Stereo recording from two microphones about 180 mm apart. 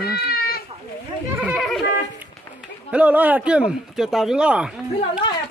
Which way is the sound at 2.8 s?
5° right (ahead or behind).